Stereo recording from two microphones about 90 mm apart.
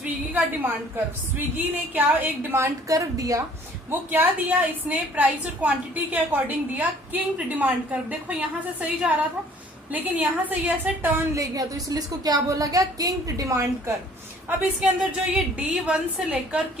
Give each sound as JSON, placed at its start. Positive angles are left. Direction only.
{"t": 0.0, "sound": "a woman's voice", "side_deg": -20}
{"t": 2.9, "sound": "a woman's voice", "side_deg": -40}
{"t": 3.9, "sound": "a woman's voice", "side_deg": -20}
{"t": 11.3, "sound": "a woman's voice", "side_deg": -40}
{"t": 14.6, "sound": "a woman's voice", "side_deg": -10}